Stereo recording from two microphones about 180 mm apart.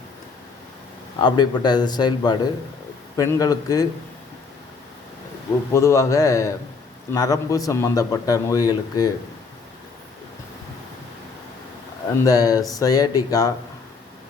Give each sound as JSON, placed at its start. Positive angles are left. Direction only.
{"t": 1.2, "sound": "speech", "side_deg": 25}
{"t": 5.7, "sound": "a man's voice", "side_deg": 15}
{"t": 12.2, "sound": "speech", "side_deg": 20}